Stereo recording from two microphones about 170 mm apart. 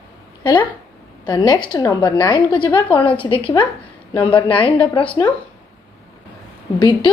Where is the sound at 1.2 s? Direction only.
25° left (ahead or behind).